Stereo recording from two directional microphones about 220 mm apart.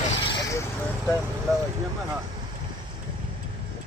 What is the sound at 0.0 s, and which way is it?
Vehicle, 30° left (ahead or behind).